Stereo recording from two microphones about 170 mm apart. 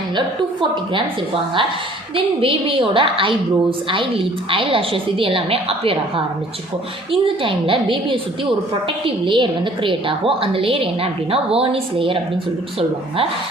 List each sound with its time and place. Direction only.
2.1 s a woman's voice: 30° right (ahead or behind)